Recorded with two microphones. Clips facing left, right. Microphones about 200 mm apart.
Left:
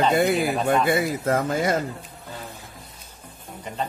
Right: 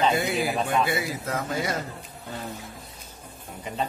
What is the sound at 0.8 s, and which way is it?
Speech, 50° left (ahead or behind).